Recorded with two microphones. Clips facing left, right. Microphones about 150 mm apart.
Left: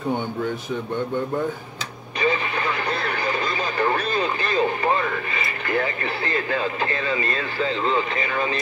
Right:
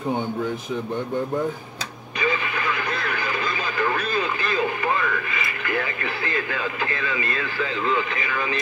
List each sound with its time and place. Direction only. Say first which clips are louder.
2.9 s radio: left 2 dB; 35° left (ahead or behind)